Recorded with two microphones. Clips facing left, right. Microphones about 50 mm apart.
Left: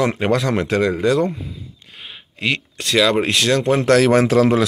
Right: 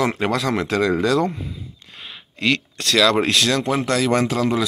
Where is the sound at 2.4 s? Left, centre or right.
Left.